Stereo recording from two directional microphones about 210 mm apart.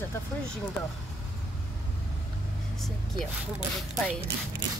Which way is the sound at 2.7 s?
Centre (ahead or behind).